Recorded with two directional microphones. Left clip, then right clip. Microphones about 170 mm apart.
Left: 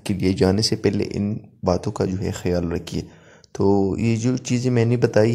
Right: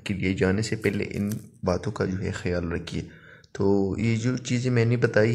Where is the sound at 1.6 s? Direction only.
35° left (ahead or behind).